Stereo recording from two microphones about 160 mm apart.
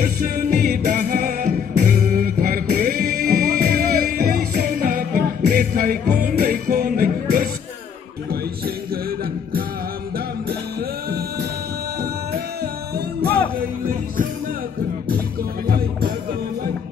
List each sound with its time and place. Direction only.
0.0 s music: 70° right (ahead or behind)
4.6 s music: 60° right (ahead or behind)
11.1 s music: 80° right
12.9 s music: 75° right (ahead or behind)
13.6 s music: 65° right (ahead or behind)